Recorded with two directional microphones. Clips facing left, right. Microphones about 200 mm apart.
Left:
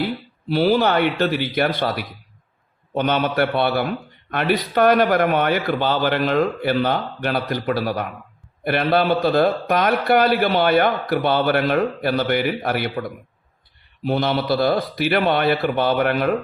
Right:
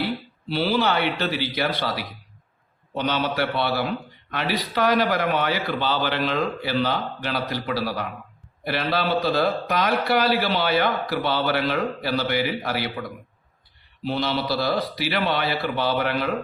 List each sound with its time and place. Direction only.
0.4 s a man's voice: 50° left (ahead or behind)